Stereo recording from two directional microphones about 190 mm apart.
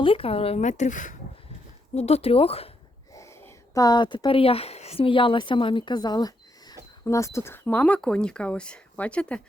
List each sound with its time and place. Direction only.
0.0 s speech: 30° left (ahead or behind)
3.1 s speech: 15° left (ahead or behind)